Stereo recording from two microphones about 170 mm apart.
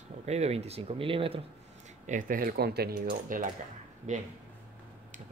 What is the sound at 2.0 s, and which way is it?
Speech, 50° right (ahead or behind).